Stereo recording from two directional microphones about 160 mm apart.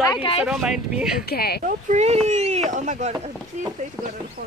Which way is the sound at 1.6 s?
50° right (ahead or behind).